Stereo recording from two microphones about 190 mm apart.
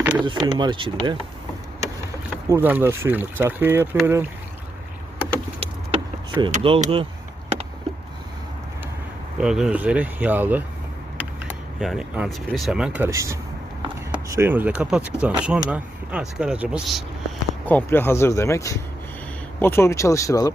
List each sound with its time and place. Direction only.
0.0 s vehicle: 10° right (ahead or behind)
0.4 s speech: 25° right (ahead or behind)
2.5 s speech: 10° right (ahead or behind)
5.5 s vehicle: 25° right (ahead or behind)
6.5 s speech: 30° right (ahead or behind)
9.4 s speech: 5° right (ahead or behind)
11.2 s mechanisms: 5° right (ahead or behind)
12.5 s speech: centre (ahead or behind)
13.1 s speech: 15° right (ahead or behind)
17.7 s speech: 10° left (ahead or behind)